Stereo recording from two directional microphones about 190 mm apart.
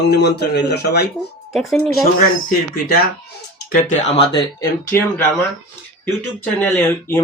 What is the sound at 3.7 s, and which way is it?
Speech, 40° left (ahead or behind).